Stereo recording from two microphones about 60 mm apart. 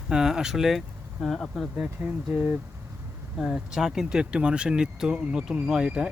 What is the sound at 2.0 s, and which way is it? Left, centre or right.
Speech, right.